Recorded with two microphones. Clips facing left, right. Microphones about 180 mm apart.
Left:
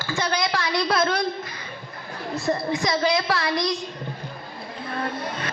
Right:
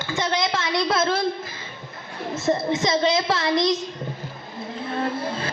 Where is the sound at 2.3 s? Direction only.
20° right (ahead or behind).